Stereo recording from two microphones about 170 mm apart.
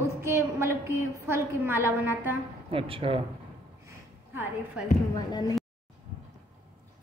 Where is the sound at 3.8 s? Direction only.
10° right (ahead or behind).